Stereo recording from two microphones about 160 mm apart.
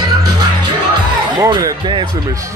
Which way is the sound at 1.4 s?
20° right (ahead or behind).